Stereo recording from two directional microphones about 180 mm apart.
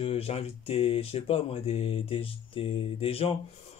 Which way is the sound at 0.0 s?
35° left (ahead or behind).